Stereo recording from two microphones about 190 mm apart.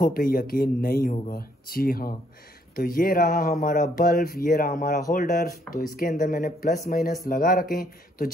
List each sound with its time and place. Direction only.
0.0 s speech: 50° left (ahead or behind)